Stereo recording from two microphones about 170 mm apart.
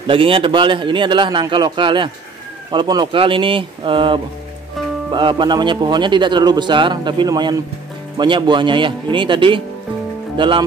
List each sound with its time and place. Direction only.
0.0 s a man's voice: 30° right (ahead or behind)